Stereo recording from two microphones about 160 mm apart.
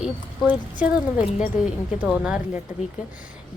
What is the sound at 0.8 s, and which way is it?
Speech, 50° left (ahead or behind).